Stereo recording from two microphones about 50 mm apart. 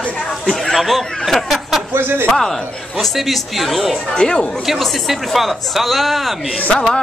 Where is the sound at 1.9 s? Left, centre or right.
Right.